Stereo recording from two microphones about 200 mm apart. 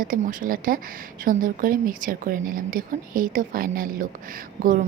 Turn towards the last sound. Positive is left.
turn(degrees=-45)  # may be behind; listen again after turning